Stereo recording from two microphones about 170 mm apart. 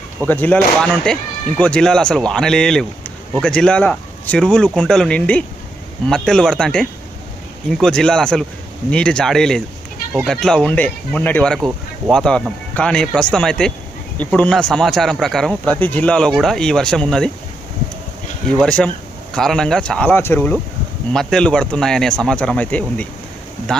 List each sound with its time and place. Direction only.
0.3 s speech: 10° left (ahead or behind)
18.6 s speech: 5° left (ahead or behind)